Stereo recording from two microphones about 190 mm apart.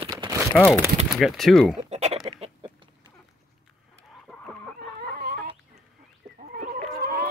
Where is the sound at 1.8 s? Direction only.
35° right (ahead or behind).